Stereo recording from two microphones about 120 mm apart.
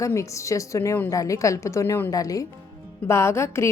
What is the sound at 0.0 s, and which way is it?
A woman's voice, 25° left (ahead or behind).